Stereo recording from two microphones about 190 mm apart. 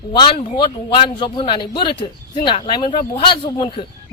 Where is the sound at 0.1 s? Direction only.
25° left (ahead or behind).